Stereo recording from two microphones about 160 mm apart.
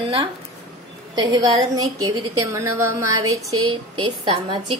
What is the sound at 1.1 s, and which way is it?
A woman's voice, 25° right (ahead or behind).